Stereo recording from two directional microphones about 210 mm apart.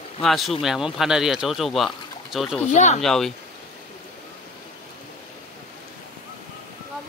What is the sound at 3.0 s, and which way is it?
Speech, centre (ahead or behind).